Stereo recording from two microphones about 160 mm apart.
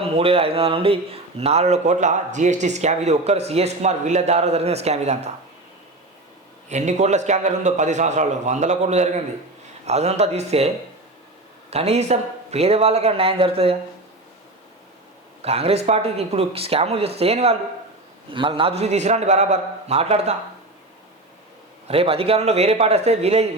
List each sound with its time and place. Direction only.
0.0 s speech: 35° right (ahead or behind)
6.7 s speech: 45° right (ahead or behind)
11.7 s speech: 40° right (ahead or behind)
15.4 s speech: 40° right (ahead or behind)
21.8 s speech: 35° right (ahead or behind)